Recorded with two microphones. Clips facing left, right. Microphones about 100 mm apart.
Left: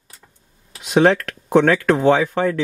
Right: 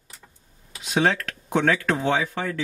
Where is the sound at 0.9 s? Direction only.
60° left (ahead or behind).